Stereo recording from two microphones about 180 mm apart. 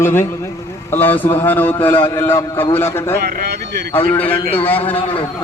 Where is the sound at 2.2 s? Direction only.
15° left (ahead or behind).